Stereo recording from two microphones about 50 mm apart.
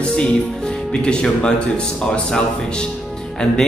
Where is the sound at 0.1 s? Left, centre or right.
Centre.